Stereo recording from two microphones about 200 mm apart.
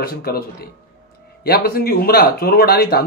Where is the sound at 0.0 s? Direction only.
50° left (ahead or behind).